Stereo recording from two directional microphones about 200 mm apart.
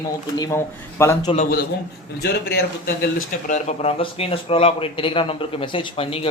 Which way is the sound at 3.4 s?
35° left (ahead or behind).